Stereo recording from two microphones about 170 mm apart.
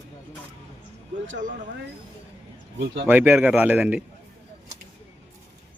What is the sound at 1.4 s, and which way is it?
Speech, 50° right (ahead or behind).